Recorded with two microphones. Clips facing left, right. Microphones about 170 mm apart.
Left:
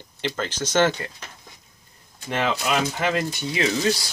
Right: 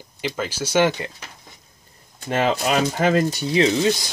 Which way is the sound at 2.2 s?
40° right (ahead or behind).